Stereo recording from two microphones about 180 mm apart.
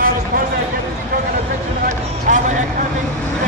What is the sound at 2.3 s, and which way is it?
Speech, 45° right (ahead or behind).